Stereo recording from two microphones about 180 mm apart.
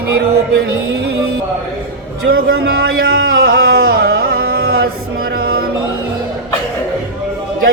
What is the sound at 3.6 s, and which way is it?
Speech, 55° right (ahead or behind).